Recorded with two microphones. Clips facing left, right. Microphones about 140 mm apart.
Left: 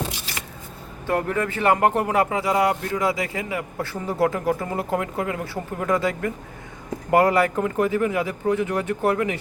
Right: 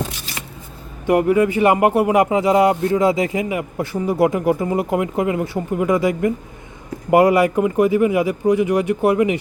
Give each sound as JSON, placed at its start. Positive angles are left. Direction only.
{"t": 1.0, "sound": "speech", "side_deg": -15}